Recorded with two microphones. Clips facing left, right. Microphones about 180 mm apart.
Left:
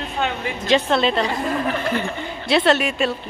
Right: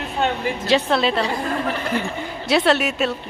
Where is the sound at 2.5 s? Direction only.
5° right (ahead or behind).